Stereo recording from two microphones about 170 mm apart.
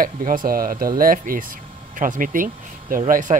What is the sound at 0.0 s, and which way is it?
Speech, 55° right (ahead or behind).